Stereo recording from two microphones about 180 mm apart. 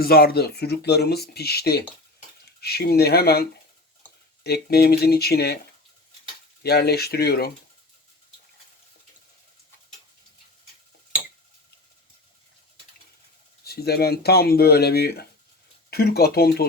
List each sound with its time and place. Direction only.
0.0 s speech: 55° left (ahead or behind)
4.4 s speech: 65° left (ahead or behind)
6.6 s speech: 65° left (ahead or behind)
13.7 s speech: 60° left (ahead or behind)